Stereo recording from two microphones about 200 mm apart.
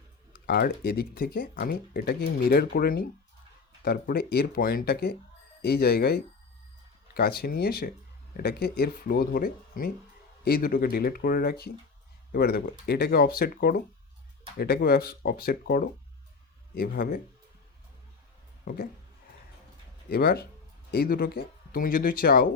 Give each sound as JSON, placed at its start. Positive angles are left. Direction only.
{"t": 0.4, "sound": "speech", "side_deg": 50}
{"t": 18.6, "sound": "speech", "side_deg": 45}
{"t": 20.1, "sound": "speech", "side_deg": 50}